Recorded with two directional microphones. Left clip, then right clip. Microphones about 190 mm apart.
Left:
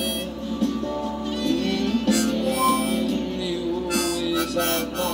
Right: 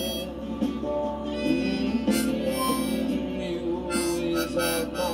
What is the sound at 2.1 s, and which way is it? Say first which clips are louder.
Harmonica: left 3 dB; centre (ahead or behind).